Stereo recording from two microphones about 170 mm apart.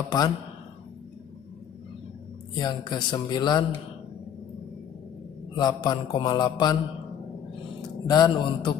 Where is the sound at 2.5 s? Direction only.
25° left (ahead or behind).